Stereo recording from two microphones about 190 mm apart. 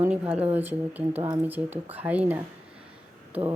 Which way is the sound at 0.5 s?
10° right (ahead or behind).